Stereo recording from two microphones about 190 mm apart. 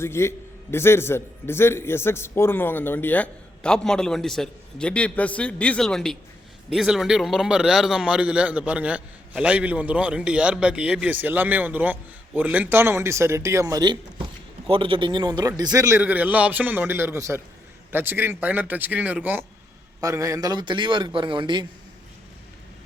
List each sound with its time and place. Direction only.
0.0 s a man's voice: 15° left (ahead or behind); by 21.7 s 25° right (ahead or behind)